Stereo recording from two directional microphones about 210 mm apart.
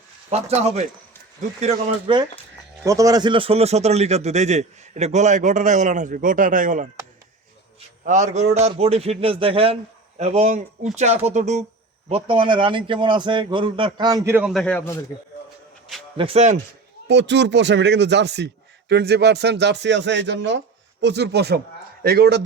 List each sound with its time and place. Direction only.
0.3 s a man's voice: 30° right (ahead or behind)
2.8 s a man's voice: 15° right (ahead or behind); by 6.8 s 40° right (ahead or behind)
8.0 s a man's voice: 35° right (ahead or behind); by 14.9 s 10° left (ahead or behind)
16.1 s a man's voice: 30° right (ahead or behind)
17.1 s speech: 55° right (ahead or behind)